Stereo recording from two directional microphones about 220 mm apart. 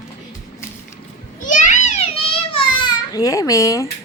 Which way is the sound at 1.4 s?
35° left (ahead or behind).